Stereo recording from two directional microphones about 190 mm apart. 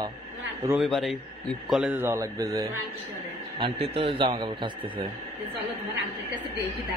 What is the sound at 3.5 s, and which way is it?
A man's voice, 30° right (ahead or behind).